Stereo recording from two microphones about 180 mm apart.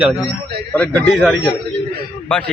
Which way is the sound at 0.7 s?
5° left (ahead or behind).